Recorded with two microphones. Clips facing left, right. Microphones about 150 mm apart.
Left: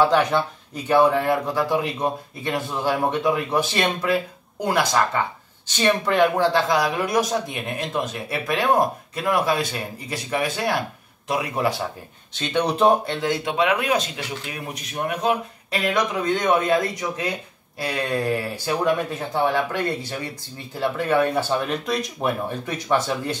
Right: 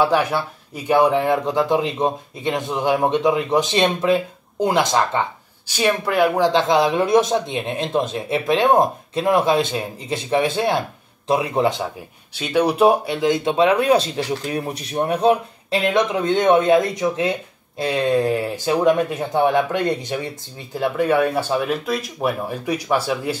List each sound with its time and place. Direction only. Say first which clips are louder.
0.0 s speech: even; 10° right (ahead or behind)
5.7 s speech: right 1 dB; 10° right (ahead or behind)
6.5 s speech: right 4 dB; 20° right (ahead or behind)
12.4 s speech: right 4 dB; 10° right (ahead or behind)